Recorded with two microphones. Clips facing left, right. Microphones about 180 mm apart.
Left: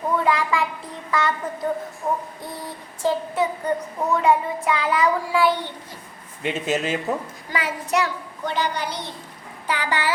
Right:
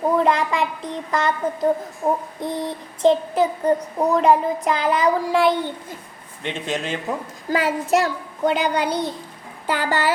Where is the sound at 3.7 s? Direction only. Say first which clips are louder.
Right 4 dB; 40° right (ahead or behind).